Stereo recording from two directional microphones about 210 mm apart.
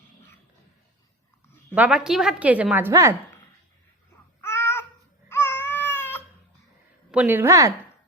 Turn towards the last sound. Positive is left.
turn(degrees=-15)  # may be behind; listen again after turning